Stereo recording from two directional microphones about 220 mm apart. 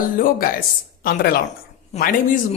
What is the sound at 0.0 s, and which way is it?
A man's voice, 40° left (ahead or behind).